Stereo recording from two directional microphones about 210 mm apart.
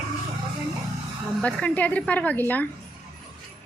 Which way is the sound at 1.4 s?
5° left (ahead or behind).